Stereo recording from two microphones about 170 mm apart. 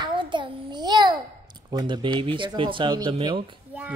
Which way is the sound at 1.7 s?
25° right (ahead or behind).